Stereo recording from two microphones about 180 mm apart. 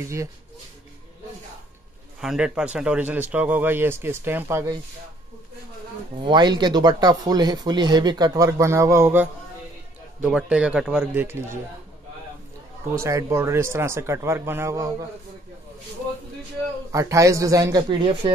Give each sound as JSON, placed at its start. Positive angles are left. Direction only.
{"t": 2.1, "sound": "a man's voice", "side_deg": -5}
{"t": 6.2, "sound": "a man's voice", "side_deg": -25}
{"t": 12.9, "sound": "a man's voice", "side_deg": -15}
{"t": 16.9, "sound": "a man's voice", "side_deg": -15}